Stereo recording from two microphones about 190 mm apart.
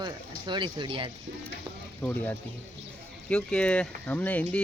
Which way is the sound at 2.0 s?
10° left (ahead or behind).